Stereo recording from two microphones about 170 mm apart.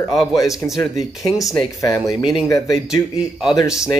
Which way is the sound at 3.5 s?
20° left (ahead or behind).